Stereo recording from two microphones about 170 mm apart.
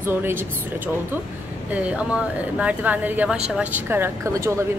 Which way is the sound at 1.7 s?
5° right (ahead or behind).